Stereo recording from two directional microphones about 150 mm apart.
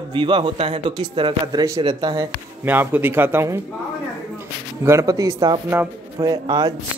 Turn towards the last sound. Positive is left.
turn(degrees=-25)  # may be behind; listen again after turning